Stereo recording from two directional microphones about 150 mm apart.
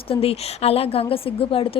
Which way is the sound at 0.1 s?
40° left (ahead or behind).